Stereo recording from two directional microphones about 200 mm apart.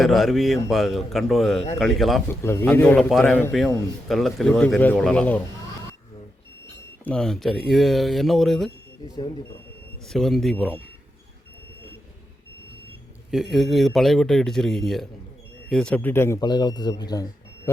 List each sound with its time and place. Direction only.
0.0 s speech: centre (ahead or behind)
2.4 s a man's voice: 10° left (ahead or behind)
7.0 s speech: 5° left (ahead or behind)
9.0 s speech: 20° left (ahead or behind)
10.1 s speech: centre (ahead or behind)
13.3 s speech: centre (ahead or behind); by 17.2 s 20° left (ahead or behind)